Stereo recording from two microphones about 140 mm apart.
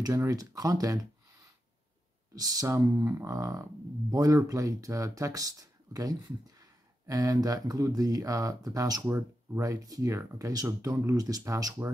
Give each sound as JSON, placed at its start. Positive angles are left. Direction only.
{"t": 0.0, "sound": "speech", "side_deg": -25}
{"t": 2.3, "sound": "speech", "side_deg": -25}